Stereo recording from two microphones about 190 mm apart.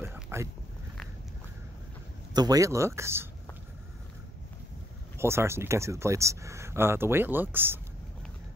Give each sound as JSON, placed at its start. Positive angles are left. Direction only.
{"t": 0.0, "sound": "a sound", "side_deg": -15}
{"t": 2.3, "sound": "speech", "side_deg": -20}
{"t": 5.1, "sound": "speech", "side_deg": -15}